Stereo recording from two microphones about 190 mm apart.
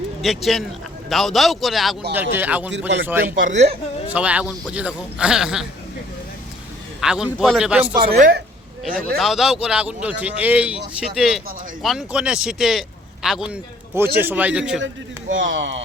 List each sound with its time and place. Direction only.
0.2 s a man's voice: centre (ahead or behind)
3.3 s speech: 40° right (ahead or behind)
4.1 s a man's voice: 5° right (ahead or behind)
7.0 s a man's voice: 5° right (ahead or behind)
8.1 s speech: 55° right (ahead or behind)
9.1 s a man's voice: centre (ahead or behind)
15.4 s speech: 80° right